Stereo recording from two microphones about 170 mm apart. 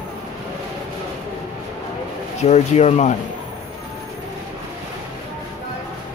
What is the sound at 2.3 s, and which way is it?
Speech, 40° left (ahead or behind).